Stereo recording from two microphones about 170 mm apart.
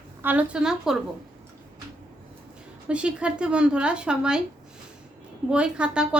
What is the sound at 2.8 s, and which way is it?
A woman's voice, 5° right (ahead or behind).